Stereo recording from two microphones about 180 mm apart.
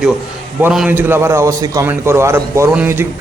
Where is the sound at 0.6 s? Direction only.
5° right (ahead or behind).